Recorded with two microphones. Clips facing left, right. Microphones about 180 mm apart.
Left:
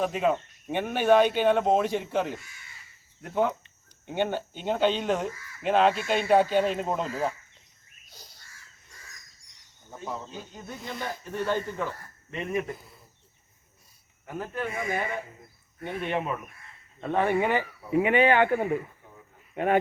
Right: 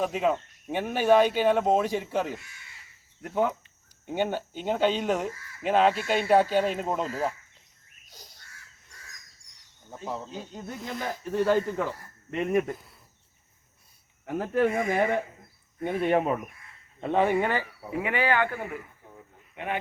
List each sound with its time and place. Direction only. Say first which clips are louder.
0.0 s speech: even; centre (ahead or behind)
3.3 s speech: even; 5° right (ahead or behind)
10.8 s speech: right 2 dB; centre (ahead or behind)
12.3 s speech: right 5 dB; 55° right (ahead or behind)
14.3 s speech: right 8 dB; 80° right
16.0 s speech: right 6 dB; 40° right (ahead or behind)
17.0 s speech: right 1 dB; 15° right (ahead or behind)
17.4 s speech: left 2 dB; 20° left (ahead or behind)
19.5 s speech: left 9 dB; 45° left (ahead or behind)